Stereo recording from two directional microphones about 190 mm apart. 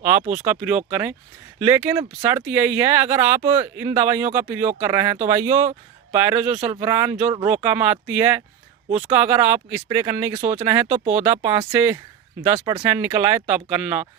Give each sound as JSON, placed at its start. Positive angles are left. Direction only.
{"t": 0.0, "sound": "speech", "side_deg": -10}
{"t": 8.9, "sound": "speech", "side_deg": -35}
{"t": 9.1, "sound": "speech", "side_deg": -10}
{"t": 10.8, "sound": "speech", "side_deg": -35}
{"t": 11.1, "sound": "speech", "side_deg": -10}